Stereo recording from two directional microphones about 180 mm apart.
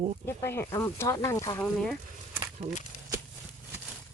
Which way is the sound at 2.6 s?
35° right (ahead or behind).